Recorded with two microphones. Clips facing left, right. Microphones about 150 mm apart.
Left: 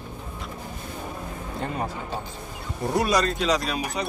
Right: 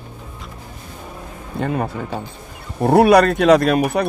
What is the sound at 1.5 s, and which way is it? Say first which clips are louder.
Speech: right 8 dB; 65° right (ahead or behind).